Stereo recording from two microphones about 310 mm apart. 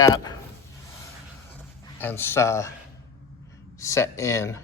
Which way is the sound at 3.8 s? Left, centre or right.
Centre.